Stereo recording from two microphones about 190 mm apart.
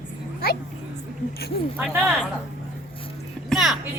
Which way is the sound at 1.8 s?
Centre (ahead or behind).